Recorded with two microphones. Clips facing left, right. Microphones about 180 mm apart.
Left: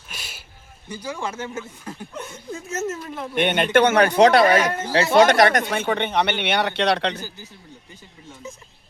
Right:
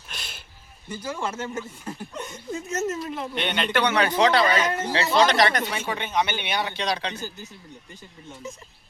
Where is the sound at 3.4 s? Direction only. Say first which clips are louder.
Left 8 dB; 50° left (ahead or behind); by 7.1 s 65° left (ahead or behind).